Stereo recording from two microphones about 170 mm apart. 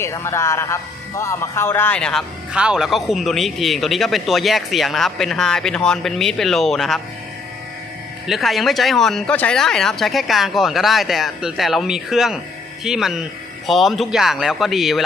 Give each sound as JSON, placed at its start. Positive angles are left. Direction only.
{"t": 0.0, "sound": "speech", "side_deg": 15}
{"t": 2.5, "sound": "a man's voice", "side_deg": -5}
{"t": 8.3, "sound": "a man's voice", "side_deg": 0}